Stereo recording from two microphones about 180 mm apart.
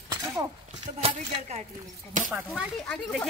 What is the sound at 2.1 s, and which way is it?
Speech, 45° right (ahead or behind).